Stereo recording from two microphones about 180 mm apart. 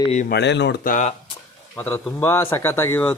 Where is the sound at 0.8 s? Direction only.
45° left (ahead or behind).